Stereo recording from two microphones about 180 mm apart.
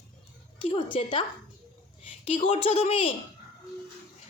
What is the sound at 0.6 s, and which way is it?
Speech, 30° left (ahead or behind).